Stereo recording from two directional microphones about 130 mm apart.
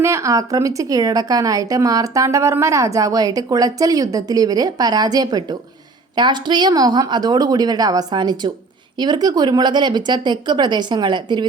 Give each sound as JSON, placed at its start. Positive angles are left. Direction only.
{"t": 0.0, "sound": "a woman's voice", "side_deg": -20}